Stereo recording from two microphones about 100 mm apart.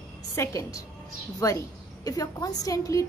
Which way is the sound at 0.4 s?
35° left (ahead or behind).